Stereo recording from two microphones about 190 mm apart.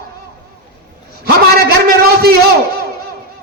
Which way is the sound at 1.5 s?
55° right (ahead or behind).